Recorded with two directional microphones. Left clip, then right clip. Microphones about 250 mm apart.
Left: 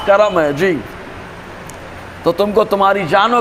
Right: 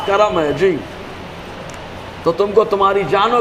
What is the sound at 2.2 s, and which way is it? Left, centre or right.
A man's voice, left.